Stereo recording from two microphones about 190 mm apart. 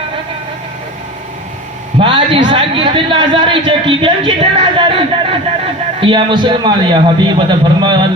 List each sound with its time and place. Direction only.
2.0 s a man's voice: 25° right (ahead or behind)